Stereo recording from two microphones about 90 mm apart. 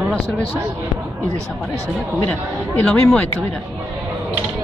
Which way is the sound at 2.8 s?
5° left (ahead or behind).